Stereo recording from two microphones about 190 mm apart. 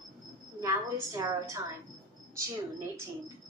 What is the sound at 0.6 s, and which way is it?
Speech, 15° right (ahead or behind).